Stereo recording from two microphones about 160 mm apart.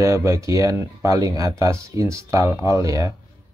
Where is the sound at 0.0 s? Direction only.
20° right (ahead or behind).